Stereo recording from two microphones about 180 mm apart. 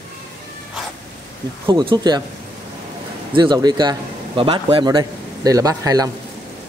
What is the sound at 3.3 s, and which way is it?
A man's voice, 25° right (ahead or behind).